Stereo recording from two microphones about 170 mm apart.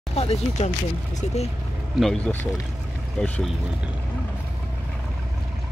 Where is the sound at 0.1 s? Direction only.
35° left (ahead or behind).